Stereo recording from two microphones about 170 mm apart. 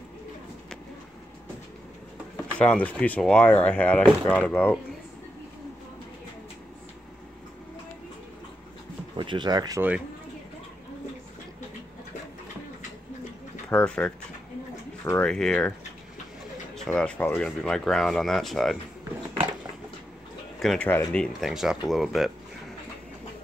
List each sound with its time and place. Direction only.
2.6 s speech: 10° left (ahead or behind)
9.1 s speech: 30° right (ahead or behind)
9.8 s speech: 10° right (ahead or behind)
13.7 s speech: 10° left (ahead or behind)
16.7 s speech: 5° left (ahead or behind)
20.5 s speech: centre (ahead or behind)